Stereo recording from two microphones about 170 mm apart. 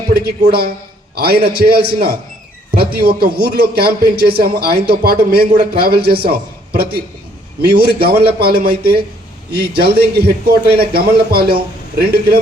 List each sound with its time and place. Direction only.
0.1 s a man's voice: 65° right (ahead or behind)